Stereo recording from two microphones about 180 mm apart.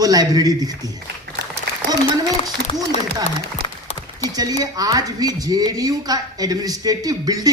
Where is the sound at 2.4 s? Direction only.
35° left (ahead or behind).